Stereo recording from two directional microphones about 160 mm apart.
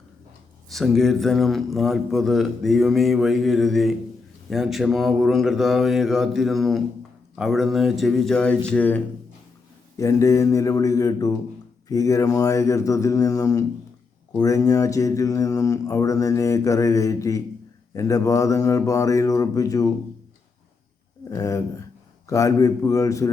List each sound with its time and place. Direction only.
0.7 s a man's voice: centre (ahead or behind)
10.0 s speech: 20° left (ahead or behind)
21.2 s a sound: 20° left (ahead or behind)
22.3 s speech: 20° left (ahead or behind)